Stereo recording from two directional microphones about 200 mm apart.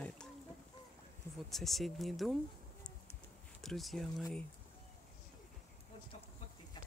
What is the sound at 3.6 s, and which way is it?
Speech, centre (ahead or behind).